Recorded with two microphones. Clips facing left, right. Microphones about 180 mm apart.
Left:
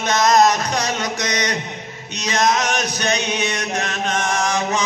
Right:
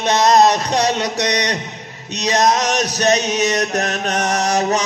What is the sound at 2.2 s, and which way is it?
Chant, 40° right (ahead or behind).